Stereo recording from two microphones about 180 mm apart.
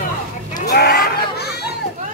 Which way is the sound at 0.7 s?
60° left (ahead or behind).